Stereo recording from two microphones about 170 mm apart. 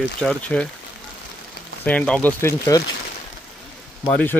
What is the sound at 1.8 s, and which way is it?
Speech, 5° left (ahead or behind).